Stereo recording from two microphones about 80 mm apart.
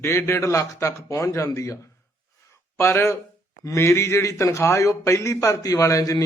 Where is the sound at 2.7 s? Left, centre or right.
Left.